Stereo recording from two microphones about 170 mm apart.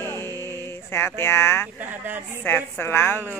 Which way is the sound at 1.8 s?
10° right (ahead or behind).